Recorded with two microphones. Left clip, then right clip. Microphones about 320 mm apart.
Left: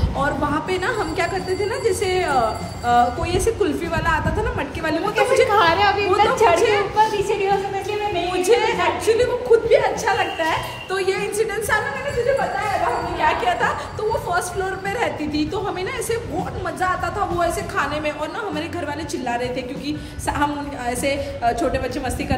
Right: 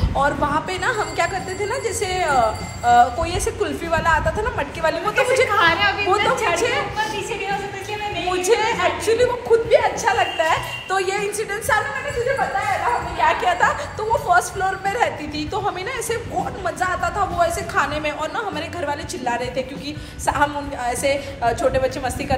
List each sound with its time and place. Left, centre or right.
0.2 s a woman's voice: centre
5.5 s a woman's voice: left
6.5 s a woman's voice: centre
8.4 s a woman's voice: centre
13.3 s a woman's voice: centre
19.2 s a woman's voice: centre